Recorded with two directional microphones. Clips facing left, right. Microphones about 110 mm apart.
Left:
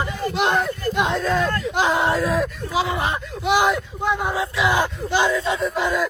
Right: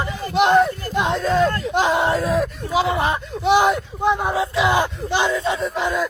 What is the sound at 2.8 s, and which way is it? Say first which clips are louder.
Speech: right 3 dB; 30° right (ahead or behind).